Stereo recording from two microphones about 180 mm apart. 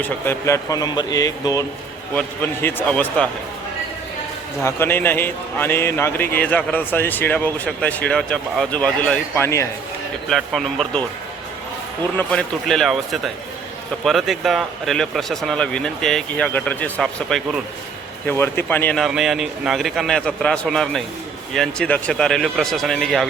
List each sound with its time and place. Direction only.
0.0 s a man's voice: 15° left (ahead or behind)
4.6 s a man's voice: 10° left (ahead or behind)
10.2 s speech: centre (ahead or behind)
12.1 s speech: 5° left (ahead or behind)
18.3 s speech: 15° left (ahead or behind)